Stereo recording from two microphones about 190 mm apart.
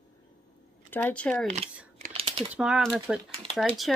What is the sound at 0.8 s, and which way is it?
Speech, 10° left (ahead or behind).